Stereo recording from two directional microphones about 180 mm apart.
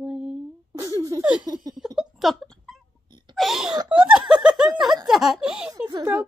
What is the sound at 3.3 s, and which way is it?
A woman's voice, centre (ahead or behind).